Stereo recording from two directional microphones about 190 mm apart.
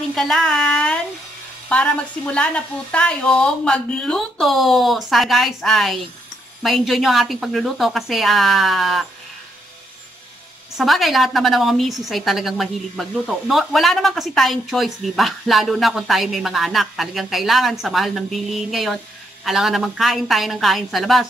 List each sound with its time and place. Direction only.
0.1 s a woman's voice: centre (ahead or behind)
10.8 s a woman's voice: centre (ahead or behind)